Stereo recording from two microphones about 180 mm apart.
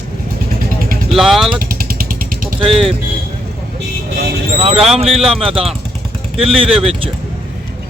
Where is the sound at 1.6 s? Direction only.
55° right (ahead or behind).